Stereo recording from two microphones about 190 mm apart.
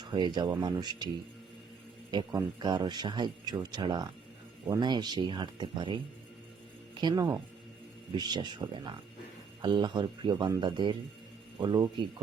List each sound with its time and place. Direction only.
0.0 s a man's voice: 25° right (ahead or behind)